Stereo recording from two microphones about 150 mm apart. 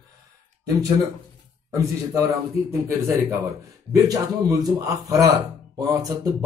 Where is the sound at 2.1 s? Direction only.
20° right (ahead or behind).